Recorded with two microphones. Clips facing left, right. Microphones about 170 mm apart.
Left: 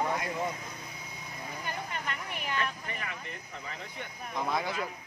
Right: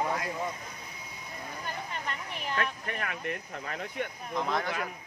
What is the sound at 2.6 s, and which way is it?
Speech, 60° right (ahead or behind).